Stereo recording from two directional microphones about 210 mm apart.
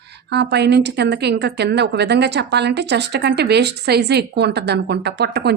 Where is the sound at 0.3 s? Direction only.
55° right (ahead or behind).